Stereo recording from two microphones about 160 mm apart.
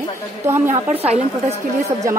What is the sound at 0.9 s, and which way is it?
Speech, 10° right (ahead or behind).